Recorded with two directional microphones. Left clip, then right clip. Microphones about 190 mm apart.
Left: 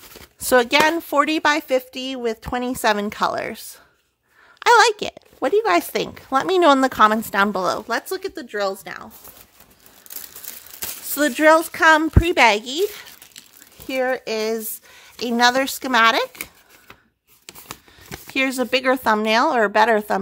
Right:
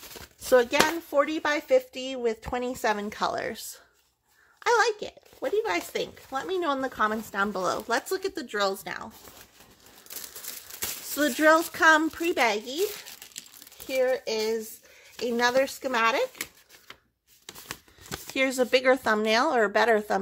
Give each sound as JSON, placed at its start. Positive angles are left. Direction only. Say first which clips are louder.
{"t": 0.5, "sound": "speech", "louder": "left 6 dB", "side_deg": 30}
{"t": 4.6, "sound": "speech", "louder": "left 10 dB", "side_deg": 40}
{"t": 10.8, "sound": "speech", "louder": "left 6 dB", "side_deg": 25}
{"t": 13.8, "sound": "speech", "louder": "left 4 dB", "side_deg": 40}
{"t": 18.2, "sound": "speech", "louder": "left 4 dB", "side_deg": 25}